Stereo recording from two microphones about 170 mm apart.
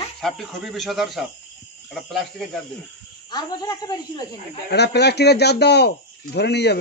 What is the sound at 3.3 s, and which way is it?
Speech, 25° left (ahead or behind).